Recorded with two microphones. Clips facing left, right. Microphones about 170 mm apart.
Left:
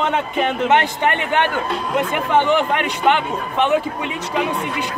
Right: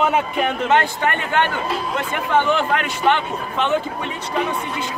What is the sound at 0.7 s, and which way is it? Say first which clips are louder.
Speech: left 1 dB; 20° left (ahead or behind).